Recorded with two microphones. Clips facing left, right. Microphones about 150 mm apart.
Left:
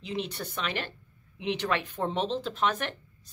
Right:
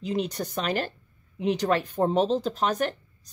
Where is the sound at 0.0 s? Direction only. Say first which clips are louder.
Right 6 dB; 40° right (ahead or behind).